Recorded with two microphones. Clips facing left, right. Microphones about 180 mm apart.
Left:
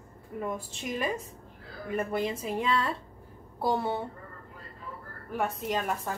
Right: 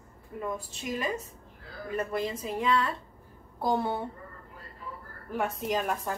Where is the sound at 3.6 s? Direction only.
5° left (ahead or behind).